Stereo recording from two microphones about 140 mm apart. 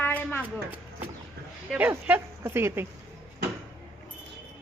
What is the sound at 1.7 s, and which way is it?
Speech, 10° right (ahead or behind).